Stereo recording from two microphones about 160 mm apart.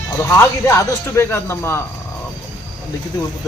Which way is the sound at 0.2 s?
15° left (ahead or behind).